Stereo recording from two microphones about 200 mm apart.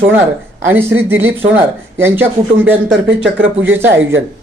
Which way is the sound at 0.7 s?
10° right (ahead or behind).